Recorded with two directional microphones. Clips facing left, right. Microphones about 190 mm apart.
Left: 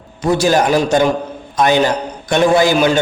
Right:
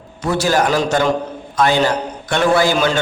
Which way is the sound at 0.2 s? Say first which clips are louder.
Left 3 dB; 15° left (ahead or behind).